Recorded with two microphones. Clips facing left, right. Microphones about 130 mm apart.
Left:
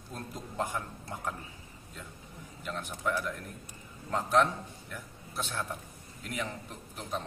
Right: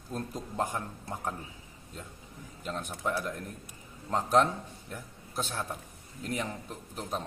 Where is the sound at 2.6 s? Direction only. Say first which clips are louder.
Right 1 dB; 35° right (ahead or behind).